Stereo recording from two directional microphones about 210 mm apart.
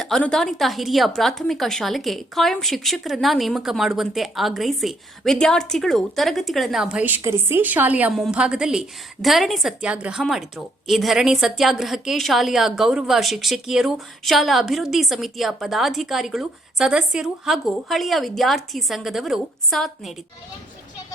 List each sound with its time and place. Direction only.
0.0 s a woman's voice: 5° left (ahead or behind)